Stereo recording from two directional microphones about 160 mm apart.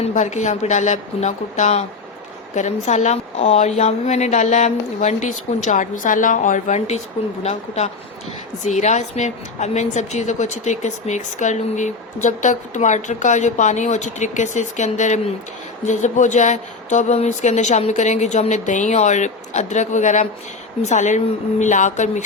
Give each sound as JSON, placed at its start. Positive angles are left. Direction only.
{"t": 0.0, "sound": "a woman's voice", "side_deg": 45}
{"t": 8.6, "sound": "a woman's voice", "side_deg": 50}